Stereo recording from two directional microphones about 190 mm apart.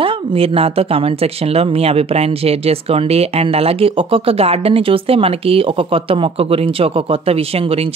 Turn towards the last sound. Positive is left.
turn(degrees=-30)  # may be behind; listen again after turning